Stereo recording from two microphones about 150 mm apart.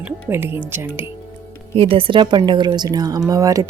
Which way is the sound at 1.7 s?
35° right (ahead or behind).